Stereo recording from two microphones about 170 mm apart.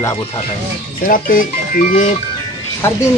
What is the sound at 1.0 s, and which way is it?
Speech, 55° left (ahead or behind).